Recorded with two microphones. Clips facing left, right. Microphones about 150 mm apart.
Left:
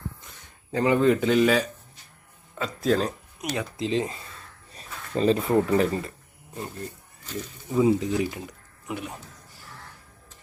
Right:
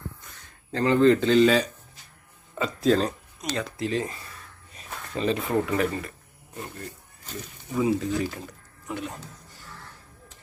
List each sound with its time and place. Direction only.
0.3 s speech: 20° left (ahead or behind); by 3.1 s centre (ahead or behind)
3.5 s speech: 15° left (ahead or behind)
4.7 s speech: 35° left (ahead or behind)
7.8 s speech: 20° left (ahead or behind)